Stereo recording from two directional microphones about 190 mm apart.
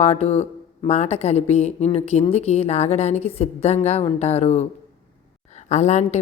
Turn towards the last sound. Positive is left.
turn(degrees=35)  # may be behind; listen again after turning